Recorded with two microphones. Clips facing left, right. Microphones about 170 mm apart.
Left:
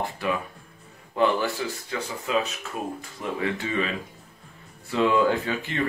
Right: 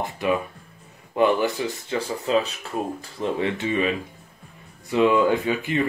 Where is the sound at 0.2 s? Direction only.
20° right (ahead or behind).